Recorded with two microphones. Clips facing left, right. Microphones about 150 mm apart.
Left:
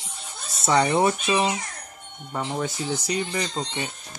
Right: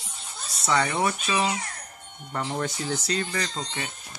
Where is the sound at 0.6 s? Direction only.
25° left (ahead or behind).